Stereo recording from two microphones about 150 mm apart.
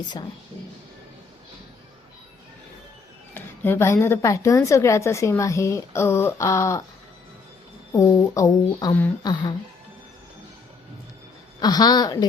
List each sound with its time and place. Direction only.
3.3 s a woman's voice: 15° left (ahead or behind)
7.9 s a woman's voice: 20° left (ahead or behind)
9.2 s a woman's voice: 30° left (ahead or behind)
11.6 s a woman's voice: 25° left (ahead or behind)